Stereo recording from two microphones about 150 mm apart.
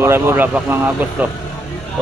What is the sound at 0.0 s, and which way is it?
Speech, 15° right (ahead or behind).